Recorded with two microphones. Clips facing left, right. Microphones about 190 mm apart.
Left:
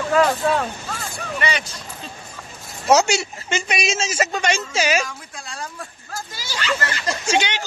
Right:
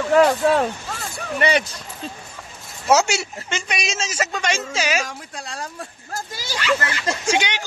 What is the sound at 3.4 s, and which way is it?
Speech, 5° left (ahead or behind).